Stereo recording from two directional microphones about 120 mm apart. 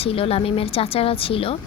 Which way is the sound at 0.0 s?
55° left (ahead or behind).